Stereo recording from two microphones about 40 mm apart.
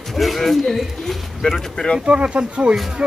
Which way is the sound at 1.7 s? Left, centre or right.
Centre.